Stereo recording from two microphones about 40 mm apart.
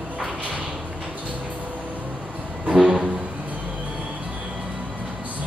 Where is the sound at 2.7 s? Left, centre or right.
Centre.